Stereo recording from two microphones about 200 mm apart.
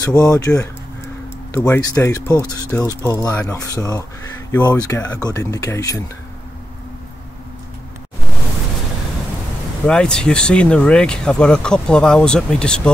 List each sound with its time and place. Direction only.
0.2 s speech: 15° left (ahead or behind)
9.8 s speech: 5° left (ahead or behind)